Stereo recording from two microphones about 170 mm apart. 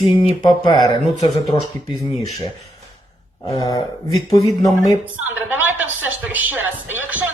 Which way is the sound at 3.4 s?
25° left (ahead or behind).